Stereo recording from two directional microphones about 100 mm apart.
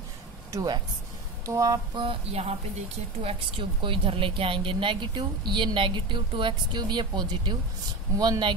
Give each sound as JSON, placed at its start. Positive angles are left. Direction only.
{"t": 0.5, "sound": "speech", "side_deg": -35}
{"t": 1.4, "sound": "a sound", "side_deg": -30}
{"t": 2.0, "sound": "speech", "side_deg": -75}
{"t": 3.3, "sound": "a woman's voice", "side_deg": -60}